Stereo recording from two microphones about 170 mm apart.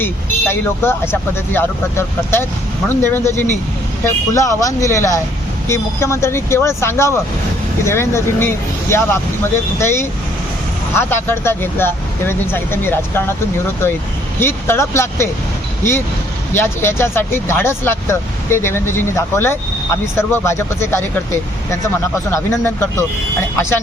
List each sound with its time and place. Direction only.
0.0 s speech: 15° left (ahead or behind)
14.3 s speech: 15° left (ahead or behind)
22.3 s speech: 15° left (ahead or behind)